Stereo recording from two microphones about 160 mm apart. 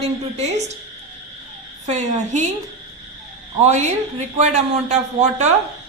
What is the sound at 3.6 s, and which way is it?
Speech, 45° right (ahead or behind).